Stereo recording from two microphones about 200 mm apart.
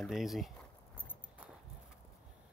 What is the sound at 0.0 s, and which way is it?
Speech, centre (ahead or behind).